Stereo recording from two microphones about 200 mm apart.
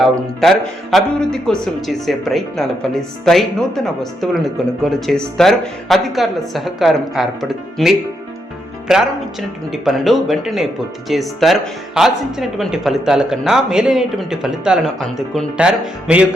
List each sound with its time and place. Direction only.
0.0 s speech: centre (ahead or behind)